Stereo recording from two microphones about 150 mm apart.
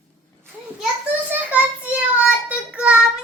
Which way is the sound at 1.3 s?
10° right (ahead or behind).